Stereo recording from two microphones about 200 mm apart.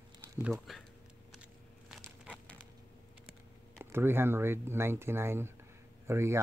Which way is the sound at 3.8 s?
10° right (ahead or behind).